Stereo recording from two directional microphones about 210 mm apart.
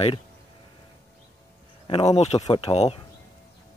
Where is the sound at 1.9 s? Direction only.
30° left (ahead or behind).